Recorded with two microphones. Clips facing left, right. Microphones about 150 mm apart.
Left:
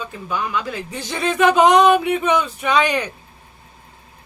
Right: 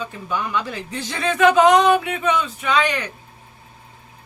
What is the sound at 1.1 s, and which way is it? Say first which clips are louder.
A woman's voice: even; 15° left (ahead or behind).